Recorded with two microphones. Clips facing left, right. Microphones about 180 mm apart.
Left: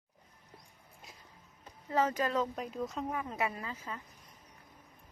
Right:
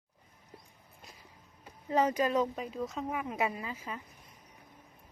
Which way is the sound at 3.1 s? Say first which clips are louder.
Right 2 dB; 10° right (ahead or behind).